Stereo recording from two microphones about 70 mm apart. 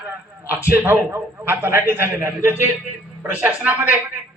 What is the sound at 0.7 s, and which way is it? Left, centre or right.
A man's voice, right.